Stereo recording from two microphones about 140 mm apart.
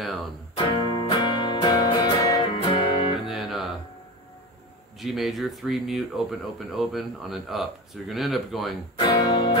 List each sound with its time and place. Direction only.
0.0 s speech: centre (ahead or behind)
0.6 s music: 35° left (ahead or behind)
2.6 s music: 40° left (ahead or behind)
3.3 s music: centre (ahead or behind)
5.0 s speech: centre (ahead or behind)
8.9 s speech: 30° left (ahead or behind)